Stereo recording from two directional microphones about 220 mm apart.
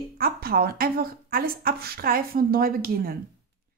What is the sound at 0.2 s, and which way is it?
A woman's voice, 40° right (ahead or behind).